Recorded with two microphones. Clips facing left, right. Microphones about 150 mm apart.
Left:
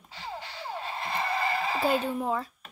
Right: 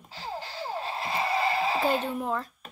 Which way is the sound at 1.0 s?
10° right (ahead or behind).